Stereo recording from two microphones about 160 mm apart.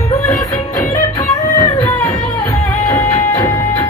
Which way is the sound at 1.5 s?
15° left (ahead or behind).